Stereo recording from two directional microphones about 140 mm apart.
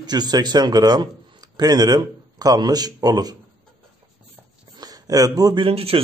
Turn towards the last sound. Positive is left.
turn(degrees=-45)  # may be behind; listen again after turning